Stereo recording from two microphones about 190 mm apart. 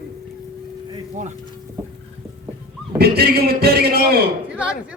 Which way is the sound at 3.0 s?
55° right (ahead or behind).